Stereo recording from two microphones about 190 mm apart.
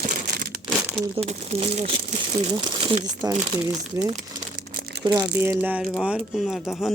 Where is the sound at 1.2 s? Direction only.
30° right (ahead or behind).